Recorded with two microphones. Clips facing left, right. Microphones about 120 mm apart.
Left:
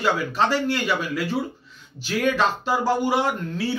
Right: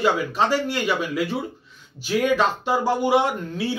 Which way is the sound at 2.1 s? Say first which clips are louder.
Right 2 dB; 10° right (ahead or behind).